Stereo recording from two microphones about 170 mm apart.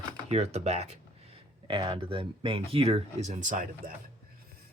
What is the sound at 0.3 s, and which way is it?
Speech, 40° right (ahead or behind).